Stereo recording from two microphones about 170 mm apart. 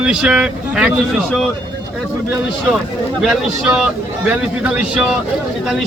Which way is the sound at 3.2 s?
5° right (ahead or behind).